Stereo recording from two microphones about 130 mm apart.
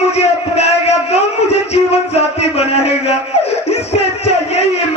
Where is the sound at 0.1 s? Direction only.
55° left (ahead or behind).